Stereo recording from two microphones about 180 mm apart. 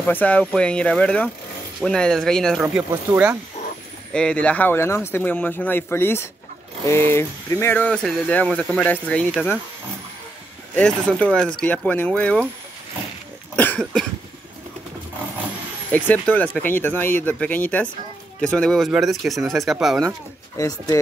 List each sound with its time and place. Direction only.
0.0 s speech: 10° left (ahead or behind); by 3.3 s 10° right (ahead or behind)
4.1 s speech: 5° left (ahead or behind)
10.8 s speech: 5° left (ahead or behind)
13.6 s cough: 5° left (ahead or behind)
15.9 s speech: 10° left (ahead or behind)
20.5 s speech: 20° left (ahead or behind)